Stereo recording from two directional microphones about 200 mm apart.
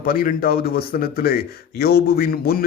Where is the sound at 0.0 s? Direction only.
45° left (ahead or behind).